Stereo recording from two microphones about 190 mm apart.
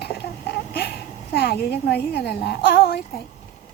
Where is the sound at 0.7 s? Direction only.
55° left (ahead or behind).